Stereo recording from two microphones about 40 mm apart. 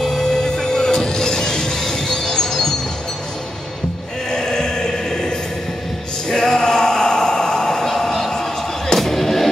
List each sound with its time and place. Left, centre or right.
0.0 s music: centre
4.3 s chant: centre
6.2 s a sound: centre